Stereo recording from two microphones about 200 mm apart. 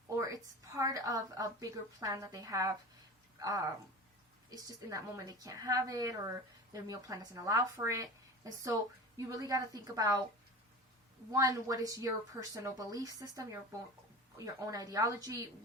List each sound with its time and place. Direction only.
0.8 s a woman's voice: 15° right (ahead or behind)
11.3 s a woman's voice: 15° right (ahead or behind)